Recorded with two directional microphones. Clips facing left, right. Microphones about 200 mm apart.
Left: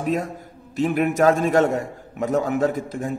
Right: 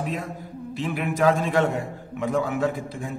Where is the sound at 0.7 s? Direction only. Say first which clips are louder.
Left 6 dB; 45° left (ahead or behind).